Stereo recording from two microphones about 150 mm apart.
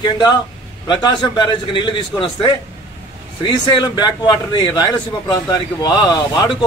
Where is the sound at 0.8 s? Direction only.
30° left (ahead or behind).